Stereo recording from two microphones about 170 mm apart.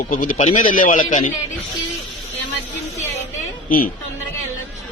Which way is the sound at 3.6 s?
55° left (ahead or behind).